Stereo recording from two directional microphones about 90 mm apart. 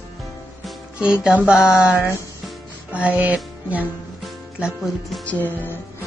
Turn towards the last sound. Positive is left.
turn(degrees=25)  # may be behind; listen again after turning